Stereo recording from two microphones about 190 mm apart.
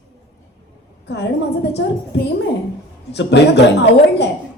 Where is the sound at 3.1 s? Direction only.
65° left (ahead or behind).